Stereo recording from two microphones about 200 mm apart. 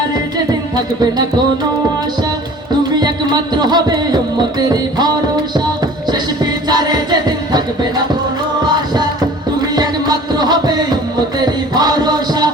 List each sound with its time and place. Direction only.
3.6 s music: 20° right (ahead or behind)
9.6 s music: 20° right (ahead or behind)